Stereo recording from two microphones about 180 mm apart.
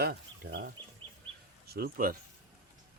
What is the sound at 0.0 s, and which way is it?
Speech, 60° right (ahead or behind).